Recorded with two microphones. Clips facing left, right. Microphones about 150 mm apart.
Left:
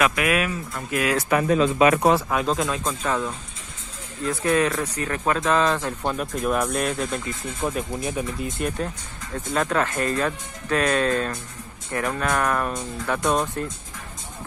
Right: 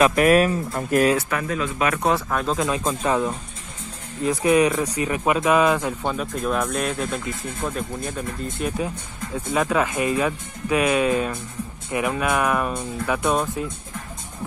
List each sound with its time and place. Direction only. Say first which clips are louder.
0.0 s speech: right 6 dB; 40° right (ahead or behind)
1.3 s speech: left 6 dB; 25° left (ahead or behind)
2.0 s speech: left 2 dB; 5° left (ahead or behind)
3.0 s speech: right 4 dB; 10° right (ahead or behind); by 8.5 s 5° left (ahead or behind)
8.5 s speech: right 4 dB; 5° right (ahead or behind)